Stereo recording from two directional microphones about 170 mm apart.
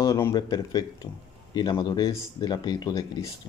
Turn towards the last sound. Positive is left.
turn(degrees=20)  # may be behind; listen again after turning